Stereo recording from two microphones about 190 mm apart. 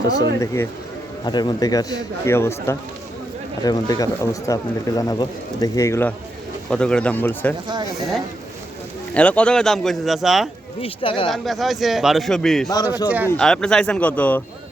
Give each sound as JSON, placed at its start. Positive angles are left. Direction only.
{"t": 0.1, "sound": "speech", "side_deg": 20}
{"t": 9.1, "sound": "a man's voice", "side_deg": 5}
{"t": 10.8, "sound": "speech", "side_deg": 30}
{"t": 11.3, "sound": "a man's voice", "side_deg": 0}
{"t": 12.7, "sound": "speech", "side_deg": 20}
{"t": 13.1, "sound": "speech", "side_deg": -10}
{"t": 13.3, "sound": "speech", "side_deg": 5}